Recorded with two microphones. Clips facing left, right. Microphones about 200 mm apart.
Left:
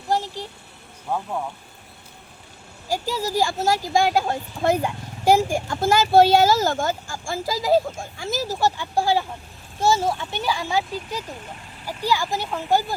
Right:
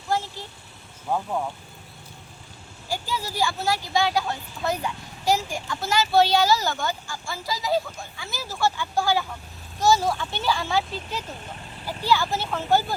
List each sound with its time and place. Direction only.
0.1 s speech: 35° left (ahead or behind)
2.9 s speech: 40° left (ahead or behind); by 13.0 s 15° left (ahead or behind)